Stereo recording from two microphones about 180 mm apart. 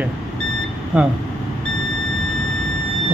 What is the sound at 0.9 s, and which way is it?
Speech, 5° right (ahead or behind).